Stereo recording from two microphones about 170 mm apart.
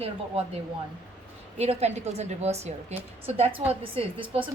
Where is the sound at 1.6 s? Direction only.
40° right (ahead or behind).